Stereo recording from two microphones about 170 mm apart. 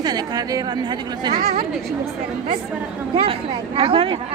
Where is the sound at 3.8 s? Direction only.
30° right (ahead or behind).